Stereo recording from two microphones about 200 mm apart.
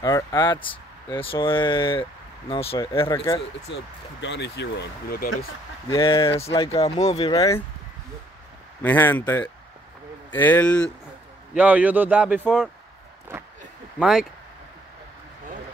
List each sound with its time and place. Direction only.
0.0 s speech: 15° left (ahead or behind)
2.9 s speech: 15° left (ahead or behind)
3.7 s speech: 65° left (ahead or behind)
5.9 s speech: 20° left (ahead or behind)
7.3 s speech: 15° left (ahead or behind)
8.8 s speech: 10° left (ahead or behind)
11.5 s speech: 5° right (ahead or behind)
13.9 s speech: 5° right (ahead or behind)